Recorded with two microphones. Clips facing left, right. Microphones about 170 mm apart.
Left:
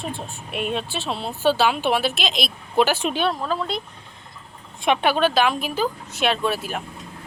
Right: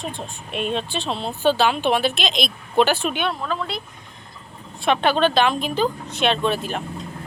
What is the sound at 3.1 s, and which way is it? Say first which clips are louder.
Speech: left 2 dB; 35° left (ahead or behind).